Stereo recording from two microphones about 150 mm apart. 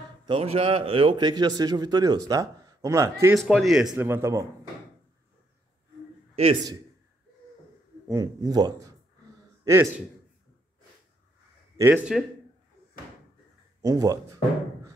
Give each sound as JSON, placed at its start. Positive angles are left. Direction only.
{"t": 0.3, "sound": "a man's voice", "side_deg": -40}
{"t": 3.3, "sound": "speech", "side_deg": 0}
{"t": 4.0, "sound": "speech", "side_deg": -15}
{"t": 6.3, "sound": "a man's voice", "side_deg": -40}
{"t": 8.1, "sound": "a man's voice", "side_deg": -25}
{"t": 11.7, "sound": "speech", "side_deg": -15}
{"t": 13.8, "sound": "a man's voice", "side_deg": -25}